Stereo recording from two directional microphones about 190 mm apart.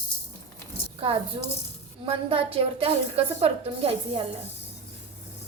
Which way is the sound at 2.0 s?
30° right (ahead or behind).